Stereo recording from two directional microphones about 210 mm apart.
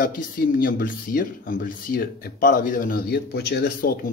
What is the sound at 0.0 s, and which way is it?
Speech, 45° left (ahead or behind).